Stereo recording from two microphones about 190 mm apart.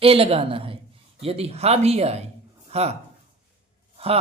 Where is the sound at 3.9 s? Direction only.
30° right (ahead or behind).